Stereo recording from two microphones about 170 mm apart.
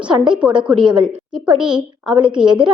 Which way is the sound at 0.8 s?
25° right (ahead or behind).